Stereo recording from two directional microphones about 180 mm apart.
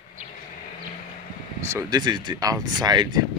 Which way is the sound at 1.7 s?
20° right (ahead or behind).